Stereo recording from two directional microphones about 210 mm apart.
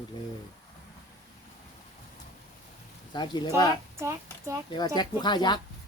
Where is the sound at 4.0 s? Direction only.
15° right (ahead or behind).